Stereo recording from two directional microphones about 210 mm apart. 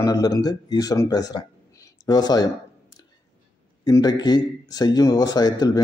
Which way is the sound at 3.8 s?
20° left (ahead or behind).